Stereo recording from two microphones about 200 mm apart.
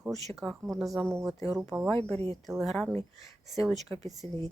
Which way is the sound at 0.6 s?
Centre (ahead or behind).